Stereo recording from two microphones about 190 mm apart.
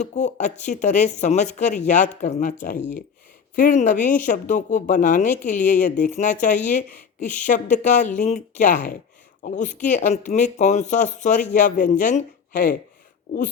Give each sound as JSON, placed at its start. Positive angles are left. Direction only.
{"t": 0.0, "sound": "speech", "side_deg": 40}